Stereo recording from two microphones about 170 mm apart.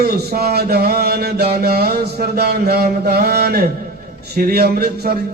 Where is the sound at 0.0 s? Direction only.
65° right (ahead or behind).